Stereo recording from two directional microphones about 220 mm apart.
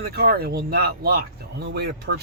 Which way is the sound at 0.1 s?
45° right (ahead or behind).